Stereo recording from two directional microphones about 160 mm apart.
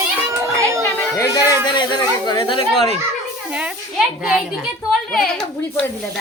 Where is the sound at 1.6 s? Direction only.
25° left (ahead or behind).